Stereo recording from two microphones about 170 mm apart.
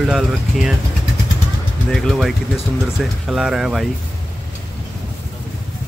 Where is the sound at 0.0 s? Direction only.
5° right (ahead or behind).